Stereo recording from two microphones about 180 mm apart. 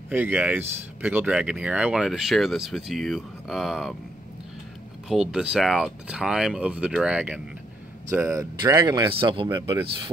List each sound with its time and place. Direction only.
0.1 s speech: 10° right (ahead or behind)
5.0 s speech: 5° right (ahead or behind); by 10.1 s 25° right (ahead or behind)